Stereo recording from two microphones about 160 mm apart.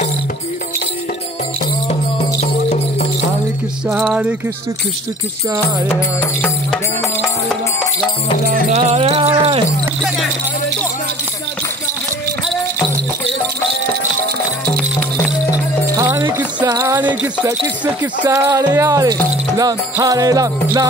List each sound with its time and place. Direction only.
3.9 s a sound: centre (ahead or behind)
8.6 s music: 45° right (ahead or behind)
16.0 s music: 15° right (ahead or behind)
16.6 s speech: 20° right (ahead or behind)
17.0 s jingle bell: 10° right (ahead or behind)
18.2 s speech: 20° right (ahead or behind)